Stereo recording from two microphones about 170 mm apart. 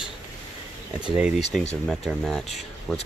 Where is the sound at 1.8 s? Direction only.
Centre (ahead or behind).